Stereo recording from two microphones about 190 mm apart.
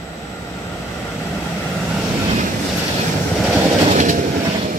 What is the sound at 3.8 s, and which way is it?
Vehicle, 40° right (ahead or behind).